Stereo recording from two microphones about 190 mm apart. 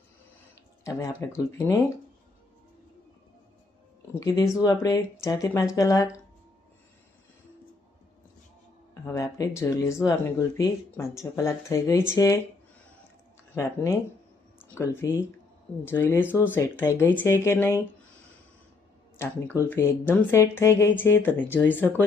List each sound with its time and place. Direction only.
0.9 s speech: 15° left (ahead or behind)
4.2 s speech: 15° left (ahead or behind)
9.0 s speech: 15° left (ahead or behind)
14.6 s speech: 15° left (ahead or behind)
19.2 s speech: 10° left (ahead or behind)